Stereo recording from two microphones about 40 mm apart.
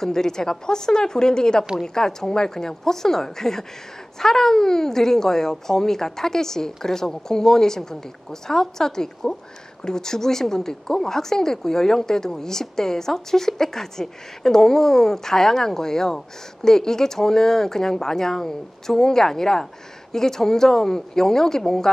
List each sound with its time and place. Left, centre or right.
0.0 s a woman's voice: centre